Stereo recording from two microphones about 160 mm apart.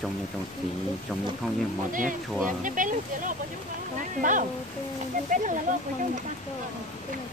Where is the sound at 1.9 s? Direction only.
55° right (ahead or behind).